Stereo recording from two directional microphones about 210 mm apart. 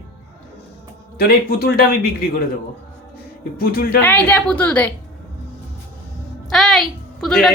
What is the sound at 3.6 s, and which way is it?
Speech, 45° left (ahead or behind).